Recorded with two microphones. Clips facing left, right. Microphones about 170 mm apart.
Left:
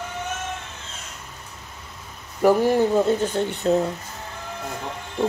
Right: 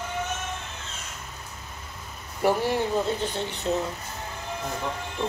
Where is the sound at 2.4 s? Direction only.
45° left (ahead or behind).